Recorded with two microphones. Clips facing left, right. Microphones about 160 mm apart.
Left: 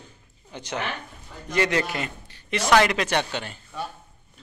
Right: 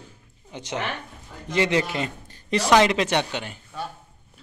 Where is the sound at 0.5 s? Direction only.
20° right (ahead or behind).